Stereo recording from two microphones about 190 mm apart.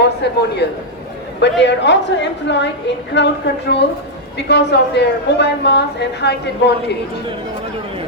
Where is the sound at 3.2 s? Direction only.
65° left (ahead or behind).